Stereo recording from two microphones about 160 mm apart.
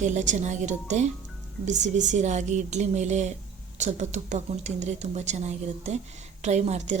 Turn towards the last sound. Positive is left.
turn(degrees=-45)  # may be behind; listen again after turning